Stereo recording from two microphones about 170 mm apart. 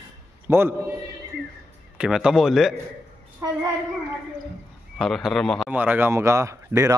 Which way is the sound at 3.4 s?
20° right (ahead or behind).